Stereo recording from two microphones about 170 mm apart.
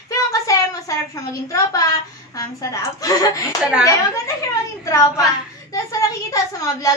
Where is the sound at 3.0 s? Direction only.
20° left (ahead or behind).